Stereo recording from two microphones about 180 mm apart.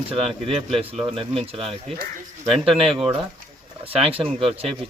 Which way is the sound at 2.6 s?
30° right (ahead or behind).